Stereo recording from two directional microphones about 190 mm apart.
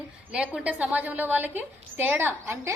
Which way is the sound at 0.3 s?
5° right (ahead or behind).